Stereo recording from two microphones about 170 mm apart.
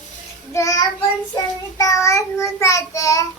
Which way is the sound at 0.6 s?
15° left (ahead or behind).